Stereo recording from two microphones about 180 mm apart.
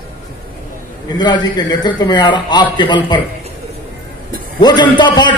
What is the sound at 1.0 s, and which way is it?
A man's voice, 25° left (ahead or behind).